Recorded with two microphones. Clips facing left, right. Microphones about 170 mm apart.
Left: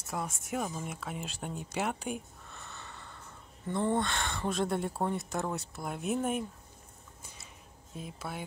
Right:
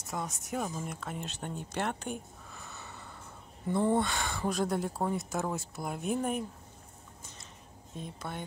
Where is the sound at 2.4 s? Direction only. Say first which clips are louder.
Right 1 dB; centre (ahead or behind).